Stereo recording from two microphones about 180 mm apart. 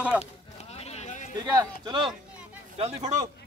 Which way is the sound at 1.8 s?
25° right (ahead or behind).